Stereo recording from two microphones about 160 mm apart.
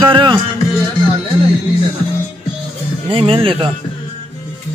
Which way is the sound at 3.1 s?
35° right (ahead or behind).